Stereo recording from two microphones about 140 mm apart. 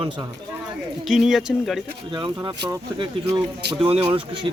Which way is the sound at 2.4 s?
30° right (ahead or behind).